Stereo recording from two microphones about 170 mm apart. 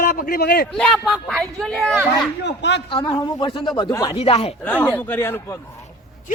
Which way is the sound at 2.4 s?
90° left.